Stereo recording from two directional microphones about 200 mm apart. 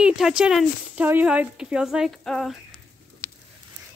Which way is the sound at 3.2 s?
10° left (ahead or behind).